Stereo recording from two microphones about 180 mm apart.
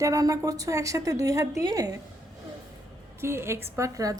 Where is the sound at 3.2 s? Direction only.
15° right (ahead or behind).